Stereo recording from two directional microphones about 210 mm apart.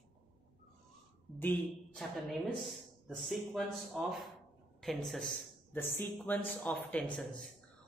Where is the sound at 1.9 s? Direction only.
Centre (ahead or behind).